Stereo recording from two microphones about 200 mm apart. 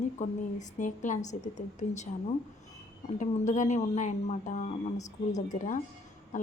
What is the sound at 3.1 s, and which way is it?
A woman's voice, 35° left (ahead or behind).